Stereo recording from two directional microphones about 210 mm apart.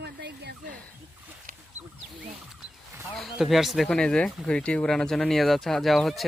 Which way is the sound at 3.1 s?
Centre (ahead or behind).